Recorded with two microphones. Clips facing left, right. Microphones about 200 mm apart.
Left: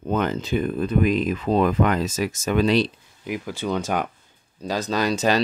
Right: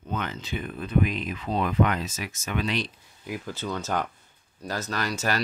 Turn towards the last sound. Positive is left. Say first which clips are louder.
# left 8 dB
turn(degrees=20)  # may be behind; listen again after turning